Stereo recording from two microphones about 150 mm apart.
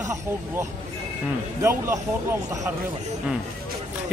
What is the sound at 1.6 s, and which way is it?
A man's voice, 20° right (ahead or behind).